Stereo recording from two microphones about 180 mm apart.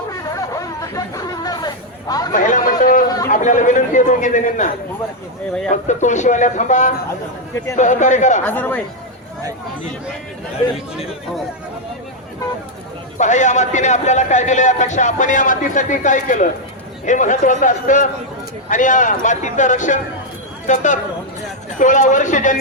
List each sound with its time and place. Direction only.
0.5 s chatter: 20° left (ahead or behind)
2.3 s a sound: 45° left (ahead or behind)
3.2 s a man's voice: 45° left (ahead or behind)
5.9 s a man's voice: 40° left (ahead or behind)
8.4 s speech: 10° left (ahead or behind)
13.1 s a man's voice: 40° left (ahead or behind)